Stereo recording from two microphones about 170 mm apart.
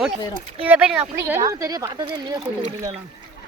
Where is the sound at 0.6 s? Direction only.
5° right (ahead or behind).